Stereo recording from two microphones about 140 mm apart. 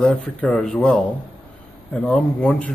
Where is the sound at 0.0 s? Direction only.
5° left (ahead or behind).